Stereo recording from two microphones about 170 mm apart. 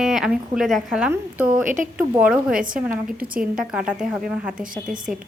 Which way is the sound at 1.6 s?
50° right (ahead or behind).